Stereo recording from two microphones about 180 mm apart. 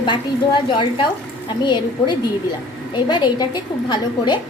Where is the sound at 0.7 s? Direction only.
25° left (ahead or behind).